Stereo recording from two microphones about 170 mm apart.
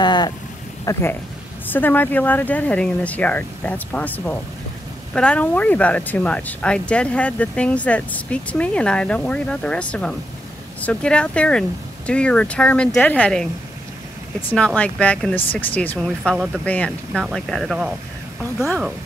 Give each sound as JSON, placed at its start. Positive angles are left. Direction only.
{"t": 0.0, "sound": "a sound", "side_deg": 25}
{"t": 0.9, "sound": "speech", "side_deg": 20}
{"t": 14.8, "sound": "speech", "side_deg": 5}